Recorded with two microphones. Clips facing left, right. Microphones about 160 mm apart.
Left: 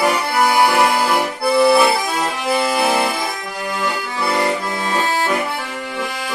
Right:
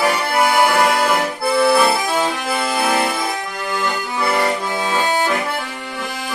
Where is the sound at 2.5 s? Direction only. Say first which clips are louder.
Left 2 dB; centre (ahead or behind).